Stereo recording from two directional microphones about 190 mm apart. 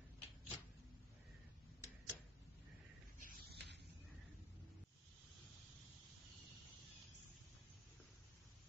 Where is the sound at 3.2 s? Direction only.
60° right (ahead or behind).